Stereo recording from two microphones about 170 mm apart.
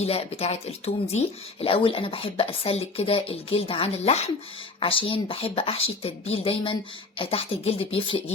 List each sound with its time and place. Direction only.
0.0 s speech: 35° left (ahead or behind)